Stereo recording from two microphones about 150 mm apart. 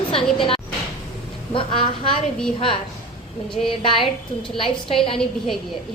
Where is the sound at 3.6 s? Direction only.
50° left (ahead or behind).